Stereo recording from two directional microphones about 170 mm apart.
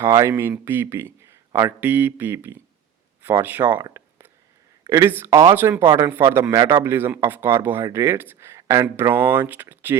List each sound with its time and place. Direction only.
0.0 s speech: 15° right (ahead or behind)
3.8 s a sound: 15° right (ahead or behind)
4.9 s speech: 15° right (ahead or behind)